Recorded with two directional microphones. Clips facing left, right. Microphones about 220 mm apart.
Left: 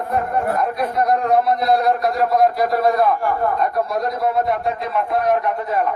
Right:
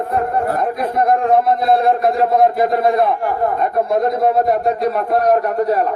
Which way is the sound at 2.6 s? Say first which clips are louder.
Right 2 dB; 25° right (ahead or behind).